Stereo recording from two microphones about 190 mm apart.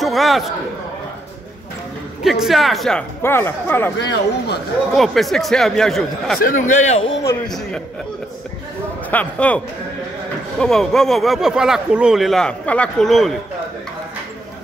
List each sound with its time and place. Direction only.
0.0 s speech: centre (ahead or behind)
2.2 s speech: centre (ahead or behind)
4.9 s speech: centre (ahead or behind)
6.4 s a man's voice: 45° left (ahead or behind)
9.1 s speech: 5° left (ahead or behind)
10.6 s speech: centre (ahead or behind)